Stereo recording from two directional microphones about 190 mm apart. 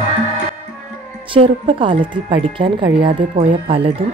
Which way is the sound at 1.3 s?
25° right (ahead or behind).